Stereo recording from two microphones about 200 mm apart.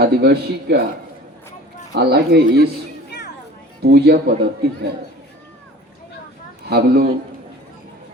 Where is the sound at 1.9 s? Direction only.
55° right (ahead or behind).